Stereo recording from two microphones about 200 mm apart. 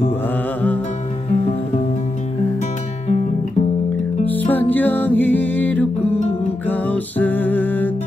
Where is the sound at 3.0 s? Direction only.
35° left (ahead or behind).